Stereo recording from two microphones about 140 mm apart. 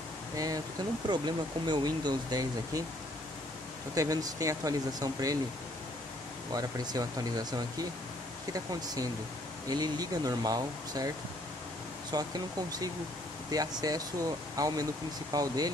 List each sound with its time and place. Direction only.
1.0 s speech: 30° right (ahead or behind)
3.9 s speech: 25° right (ahead or behind)
6.5 s speech: 30° right (ahead or behind)
12.1 s speech: 30° right (ahead or behind)
13.5 s speech: 25° right (ahead or behind)